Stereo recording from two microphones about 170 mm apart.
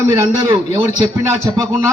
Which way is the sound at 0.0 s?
20° right (ahead or behind).